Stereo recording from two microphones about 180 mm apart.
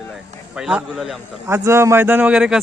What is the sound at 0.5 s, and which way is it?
Speech, 5° right (ahead or behind).